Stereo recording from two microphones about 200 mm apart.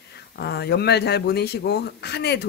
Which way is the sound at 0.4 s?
55° left (ahead or behind).